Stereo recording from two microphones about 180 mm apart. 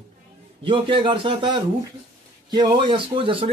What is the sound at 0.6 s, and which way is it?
Speech, 30° right (ahead or behind).